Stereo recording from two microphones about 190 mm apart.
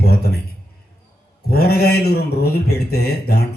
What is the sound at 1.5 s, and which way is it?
A man's voice, 55° left (ahead or behind).